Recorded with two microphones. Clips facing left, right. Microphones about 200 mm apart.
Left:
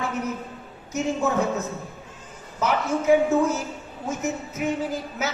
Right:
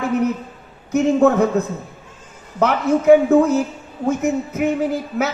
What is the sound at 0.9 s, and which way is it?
A woman's voice, 60° right (ahead or behind).